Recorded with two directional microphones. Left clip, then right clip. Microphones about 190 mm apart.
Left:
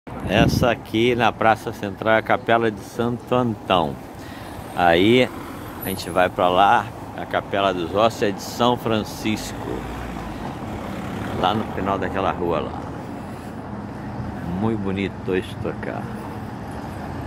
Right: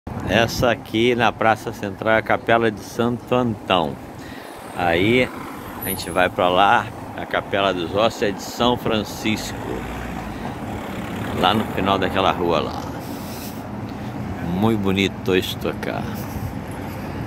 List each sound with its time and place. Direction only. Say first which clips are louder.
0.3 s speech: right 1 dB; 5° left (ahead or behind)
3.3 s speech: even; 10° left (ahead or behind)
4.7 s speech: left 2 dB; 30° left (ahead or behind)
6.1 s speech: even; 10° left (ahead or behind)
11.4 s speech: right 3 dB; centre (ahead or behind)
11.8 s speech: right 4 dB; 10° right (ahead or behind)
14.6 s speech: right 5 dB; 15° right (ahead or behind)